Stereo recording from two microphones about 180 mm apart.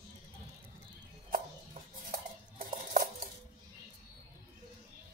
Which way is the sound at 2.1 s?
50° right (ahead or behind).